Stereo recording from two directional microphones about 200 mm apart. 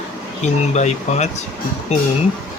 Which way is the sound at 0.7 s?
35° left (ahead or behind).